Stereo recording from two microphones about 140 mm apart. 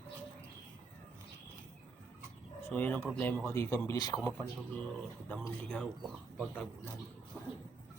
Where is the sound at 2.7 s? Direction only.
15° left (ahead or behind).